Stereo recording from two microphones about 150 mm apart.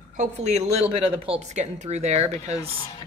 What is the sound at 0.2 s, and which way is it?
Speech, 50° right (ahead or behind).